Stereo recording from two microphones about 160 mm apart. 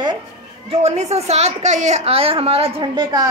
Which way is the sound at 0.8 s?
45° right (ahead or behind).